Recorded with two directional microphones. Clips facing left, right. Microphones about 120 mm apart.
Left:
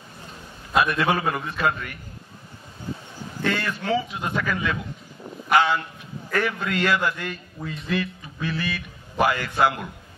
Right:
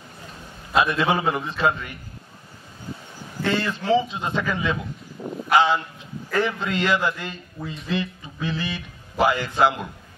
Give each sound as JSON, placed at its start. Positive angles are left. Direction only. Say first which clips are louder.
{"t": 0.7, "sound": "a man's voice", "louder": "right 1 dB", "side_deg": -20}
{"t": 3.4, "sound": "a man's voice", "louder": "right 3 dB", "side_deg": -25}